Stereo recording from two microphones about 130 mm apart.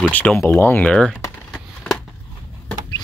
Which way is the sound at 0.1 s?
10° left (ahead or behind).